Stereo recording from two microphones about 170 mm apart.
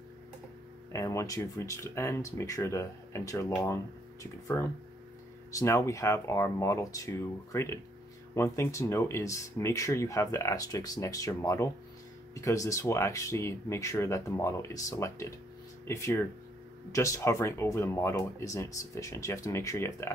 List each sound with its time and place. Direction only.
0.9 s speech: 20° left (ahead or behind)